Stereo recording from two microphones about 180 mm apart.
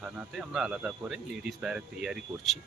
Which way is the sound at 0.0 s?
5° right (ahead or behind).